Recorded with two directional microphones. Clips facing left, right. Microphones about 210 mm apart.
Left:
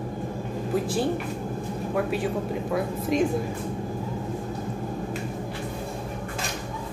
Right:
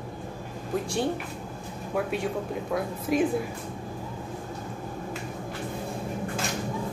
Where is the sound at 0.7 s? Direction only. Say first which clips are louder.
Left 2 dB; 5° left (ahead or behind).